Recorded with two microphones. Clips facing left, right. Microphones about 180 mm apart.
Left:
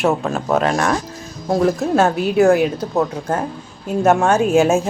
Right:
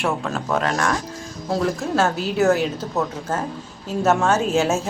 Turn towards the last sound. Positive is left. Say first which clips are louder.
# left 6 dB
turn(degrees=15)  # may be behind; listen again after turning